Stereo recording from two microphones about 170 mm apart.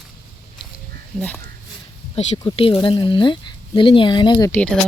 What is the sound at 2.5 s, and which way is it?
Speech, 30° left (ahead or behind).